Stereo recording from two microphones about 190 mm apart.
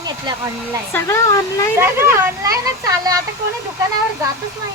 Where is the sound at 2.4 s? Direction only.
15° right (ahead or behind).